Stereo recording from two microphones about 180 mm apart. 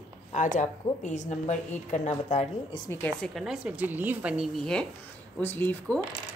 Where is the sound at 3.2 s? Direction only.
Centre (ahead or behind).